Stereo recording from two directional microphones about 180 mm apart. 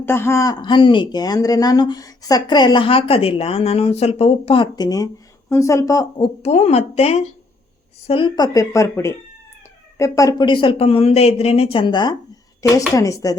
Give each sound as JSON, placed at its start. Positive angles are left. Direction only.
{"t": 0.0, "sound": "speech", "side_deg": 15}